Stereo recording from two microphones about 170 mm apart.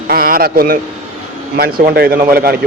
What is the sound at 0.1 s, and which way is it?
Speech, 60° right (ahead or behind).